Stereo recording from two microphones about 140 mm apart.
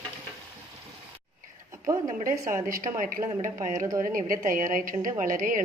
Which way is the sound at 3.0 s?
75° right (ahead or behind).